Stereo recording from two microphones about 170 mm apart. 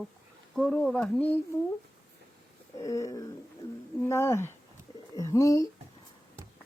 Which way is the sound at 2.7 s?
20° left (ahead or behind).